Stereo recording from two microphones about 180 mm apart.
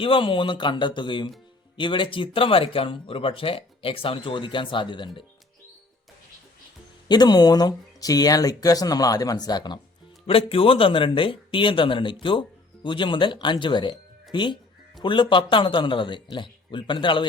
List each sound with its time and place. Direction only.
0.0 s speech: 30° left (ahead or behind)
7.1 s speech: 25° left (ahead or behind)